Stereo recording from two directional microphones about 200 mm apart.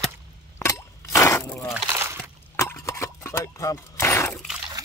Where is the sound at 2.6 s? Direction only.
15° left (ahead or behind).